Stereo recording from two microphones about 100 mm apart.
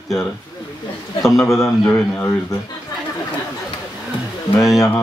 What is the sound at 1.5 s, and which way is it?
Speech, 5° left (ahead or behind).